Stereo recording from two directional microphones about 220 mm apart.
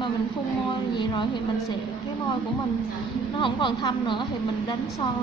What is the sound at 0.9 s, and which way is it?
Speech, 20° left (ahead or behind).